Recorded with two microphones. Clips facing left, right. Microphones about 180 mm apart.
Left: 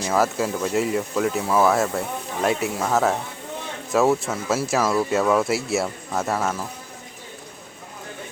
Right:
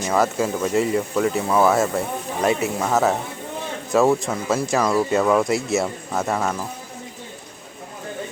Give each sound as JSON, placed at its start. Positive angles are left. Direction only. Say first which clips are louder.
{"t": 0.0, "sound": "speech", "louder": "right 1 dB", "side_deg": 0}